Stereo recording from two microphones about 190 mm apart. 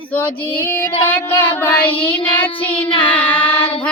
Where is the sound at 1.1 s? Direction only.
10° left (ahead or behind).